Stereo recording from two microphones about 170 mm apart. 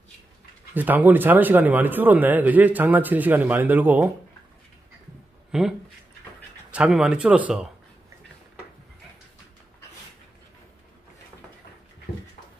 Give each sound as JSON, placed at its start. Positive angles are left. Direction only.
{"t": 0.7, "sound": "a man's voice", "side_deg": -10}
{"t": 5.5, "sound": "a man's voice", "side_deg": 0}